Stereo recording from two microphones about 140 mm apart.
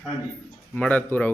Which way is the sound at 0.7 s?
10° left (ahead or behind).